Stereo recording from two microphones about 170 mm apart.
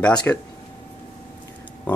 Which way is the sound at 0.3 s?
10° left (ahead or behind).